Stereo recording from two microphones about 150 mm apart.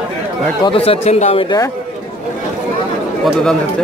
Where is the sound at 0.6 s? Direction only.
40° left (ahead or behind).